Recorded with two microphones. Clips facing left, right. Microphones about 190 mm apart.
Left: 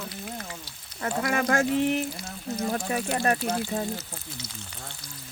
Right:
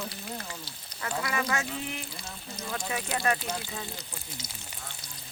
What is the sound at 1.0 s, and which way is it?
Speech, 50° left (ahead or behind).